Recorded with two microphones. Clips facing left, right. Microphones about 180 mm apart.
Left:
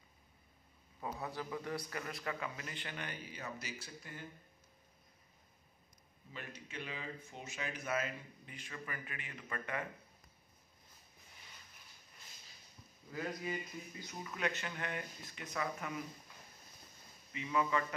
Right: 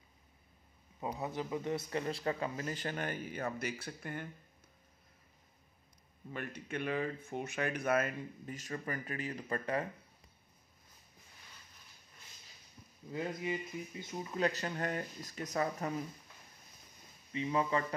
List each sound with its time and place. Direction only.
1.0 s speech: 20° right (ahead or behind); by 4.3 s 60° right (ahead or behind)
6.3 s speech: 55° right (ahead or behind); by 9.8 s 35° right (ahead or behind)
13.1 s speech: 20° right (ahead or behind); by 16.0 s 40° right (ahead or behind)
17.3 s speech: 30° right (ahead or behind)